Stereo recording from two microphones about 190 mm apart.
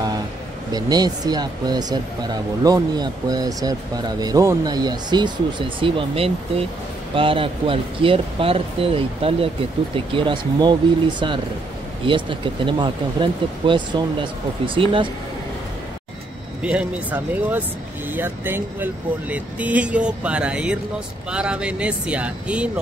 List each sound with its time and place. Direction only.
0.7 s speech: 20° right (ahead or behind)
16.6 s speech: 10° right (ahead or behind)